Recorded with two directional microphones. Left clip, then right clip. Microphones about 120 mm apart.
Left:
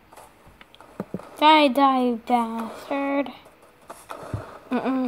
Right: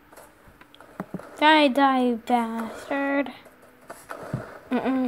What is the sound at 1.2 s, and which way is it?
Speech, 5° right (ahead or behind).